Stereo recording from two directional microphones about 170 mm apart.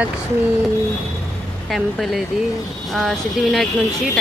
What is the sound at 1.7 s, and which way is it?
Speech, centre (ahead or behind).